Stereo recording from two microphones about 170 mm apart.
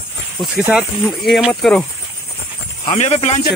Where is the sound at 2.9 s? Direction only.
40° left (ahead or behind).